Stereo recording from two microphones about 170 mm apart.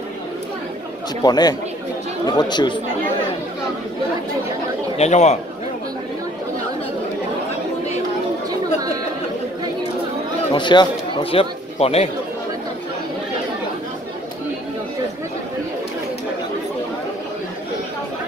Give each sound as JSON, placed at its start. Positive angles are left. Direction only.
{"t": 1.2, "sound": "speech", "side_deg": 25}
{"t": 4.9, "sound": "a man's voice", "side_deg": 40}
{"t": 10.5, "sound": "speech", "side_deg": 25}